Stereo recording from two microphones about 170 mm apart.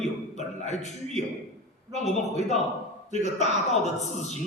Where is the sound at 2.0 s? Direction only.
40° left (ahead or behind).